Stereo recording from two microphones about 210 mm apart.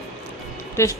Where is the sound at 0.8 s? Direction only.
15° left (ahead or behind).